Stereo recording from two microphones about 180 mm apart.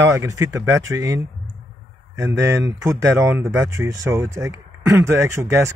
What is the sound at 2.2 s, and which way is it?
Speech, 15° right (ahead or behind).